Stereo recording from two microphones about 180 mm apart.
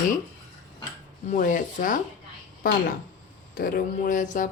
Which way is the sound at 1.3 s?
50° left (ahead or behind).